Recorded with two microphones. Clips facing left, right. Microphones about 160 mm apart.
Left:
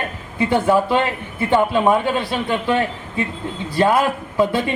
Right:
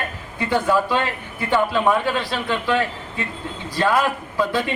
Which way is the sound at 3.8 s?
20° left (ahead or behind).